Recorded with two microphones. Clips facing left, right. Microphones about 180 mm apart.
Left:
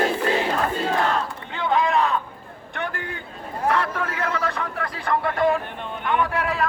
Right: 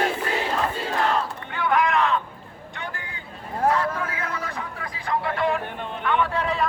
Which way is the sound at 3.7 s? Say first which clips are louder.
Left 3 dB; 75° left (ahead or behind).